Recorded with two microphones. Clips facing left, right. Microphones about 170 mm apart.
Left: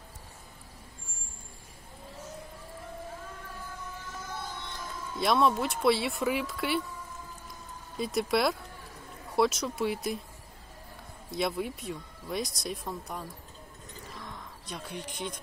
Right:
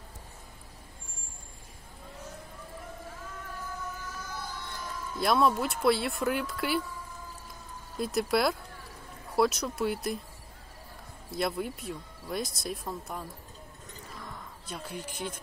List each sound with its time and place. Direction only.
4.3 s a sound: 25° left (ahead or behind)
5.2 s speech: centre (ahead or behind)
8.0 s speech: centre (ahead or behind)
11.2 s speech: centre (ahead or behind)